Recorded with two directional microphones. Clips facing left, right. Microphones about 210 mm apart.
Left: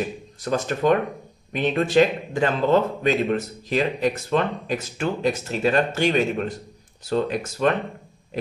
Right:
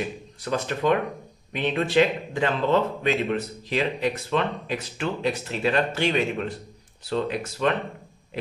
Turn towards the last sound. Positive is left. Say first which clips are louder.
# left 3 dB
turn(degrees=45)  # may be behind; listen again after turning